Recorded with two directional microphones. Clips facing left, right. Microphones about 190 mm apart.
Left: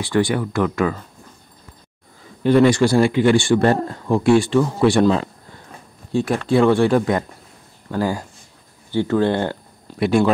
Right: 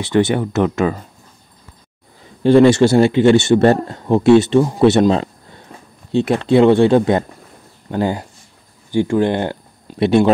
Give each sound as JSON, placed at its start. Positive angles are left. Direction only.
{"t": 0.0, "sound": "speech", "side_deg": -25}
{"t": 2.4, "sound": "speech", "side_deg": -30}